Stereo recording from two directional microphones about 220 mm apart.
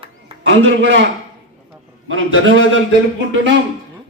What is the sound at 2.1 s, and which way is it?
Speech, 60° right (ahead or behind).